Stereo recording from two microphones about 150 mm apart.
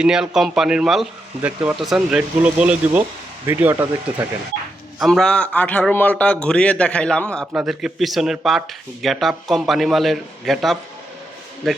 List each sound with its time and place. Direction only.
0.0 s speech: 5° right (ahead or behind)
4.9 s a man's voice: centre (ahead or behind)
7.5 s speech: 5° right (ahead or behind)